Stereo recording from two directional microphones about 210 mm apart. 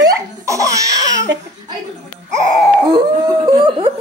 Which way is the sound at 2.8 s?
20° right (ahead or behind).